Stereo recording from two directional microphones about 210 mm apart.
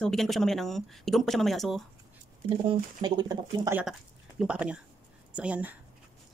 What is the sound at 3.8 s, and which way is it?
A woman's voice, 5° right (ahead or behind).